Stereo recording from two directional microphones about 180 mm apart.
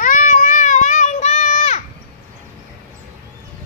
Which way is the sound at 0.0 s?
45° left (ahead or behind).